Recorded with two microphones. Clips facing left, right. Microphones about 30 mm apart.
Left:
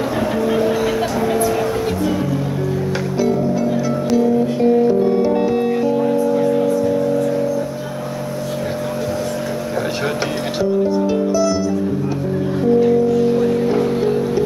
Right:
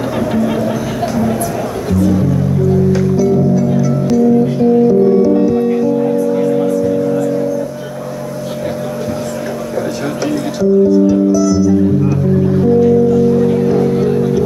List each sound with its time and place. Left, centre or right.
0.3 s music: centre
1.9 s music: left
10.2 s music: left